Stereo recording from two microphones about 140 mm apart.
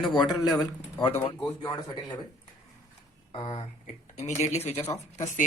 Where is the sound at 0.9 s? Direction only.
35° left (ahead or behind).